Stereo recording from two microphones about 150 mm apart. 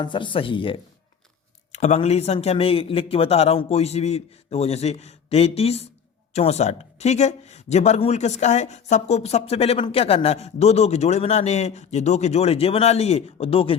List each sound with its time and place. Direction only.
0.0 s speech: 35° left (ahead or behind)
1.7 s speech: 50° left (ahead or behind)